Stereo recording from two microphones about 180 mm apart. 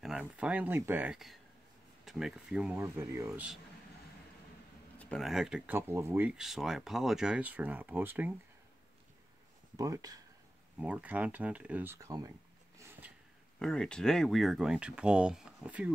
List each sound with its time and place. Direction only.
0.0 s speech: 5° right (ahead or behind)
2.8 s speech: 15° right (ahead or behind)
4.9 s speech: centre (ahead or behind)
5.8 s speech: 15° right (ahead or behind)
9.8 s speech: 20° right (ahead or behind)
10.8 s speech: 10° right (ahead or behind)
12.7 s a sound: 10° right (ahead or behind)
13.6 s speech: 5° left (ahead or behind)